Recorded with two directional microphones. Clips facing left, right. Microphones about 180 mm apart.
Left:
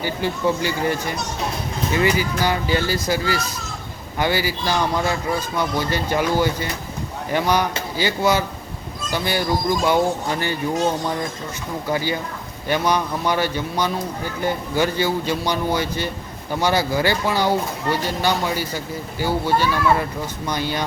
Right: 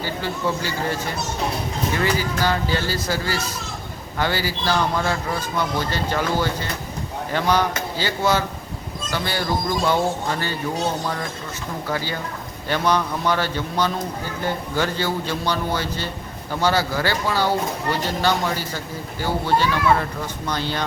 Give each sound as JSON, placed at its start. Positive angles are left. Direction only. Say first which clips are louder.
{"t": 0.0, "sound": "a man's voice", "louder": "left 3 dB", "side_deg": 15}
{"t": 2.0, "sound": "a man's voice", "louder": "left 4 dB", "side_deg": 15}
{"t": 11.9, "sound": "a man's voice", "louder": "left 4 dB", "side_deg": 15}